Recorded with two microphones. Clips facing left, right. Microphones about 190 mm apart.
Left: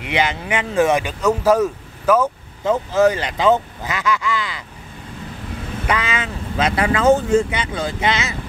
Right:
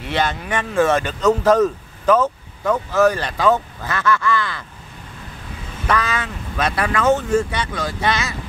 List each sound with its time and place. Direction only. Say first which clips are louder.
0.0 s speech: left 1 dB; 15° left (ahead or behind)
2.6 s speech: left 1 dB; 20° left (ahead or behind)
5.9 s speech: right 1 dB; 20° left (ahead or behind)